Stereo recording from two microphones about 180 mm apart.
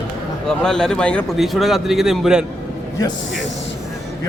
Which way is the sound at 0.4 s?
5° left (ahead or behind).